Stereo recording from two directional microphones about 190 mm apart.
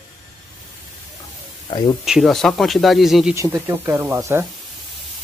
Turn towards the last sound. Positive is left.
turn(degrees=-15)  # may be behind; listen again after turning